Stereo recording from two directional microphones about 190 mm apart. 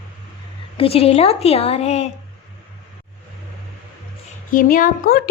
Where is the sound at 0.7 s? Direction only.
30° left (ahead or behind).